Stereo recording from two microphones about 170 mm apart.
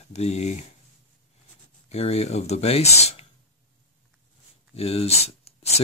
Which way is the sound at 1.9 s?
35° left (ahead or behind).